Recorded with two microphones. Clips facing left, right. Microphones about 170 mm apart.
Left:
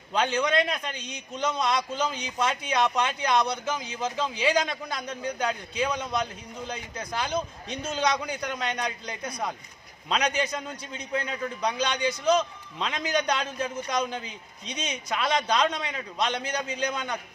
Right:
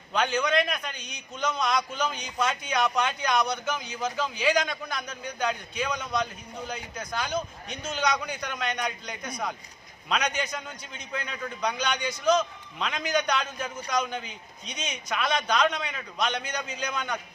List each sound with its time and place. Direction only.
0.1 s a man's voice: 30° left (ahead or behind)